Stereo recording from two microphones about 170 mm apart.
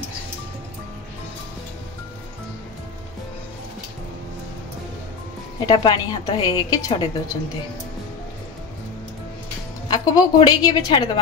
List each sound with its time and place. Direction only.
5.7 s a woman's voice: 25° left (ahead or behind)
9.8 s a woman's voice: 25° left (ahead or behind)